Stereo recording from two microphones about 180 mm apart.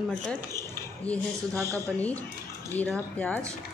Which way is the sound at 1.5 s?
20° right (ahead or behind).